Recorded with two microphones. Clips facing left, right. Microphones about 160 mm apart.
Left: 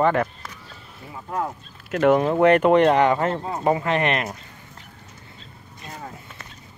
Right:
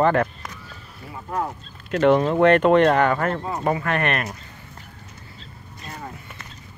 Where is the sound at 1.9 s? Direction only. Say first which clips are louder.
Even; 5° left (ahead or behind).